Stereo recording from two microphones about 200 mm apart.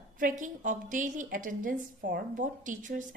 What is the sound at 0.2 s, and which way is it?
A woman's voice, 40° right (ahead or behind).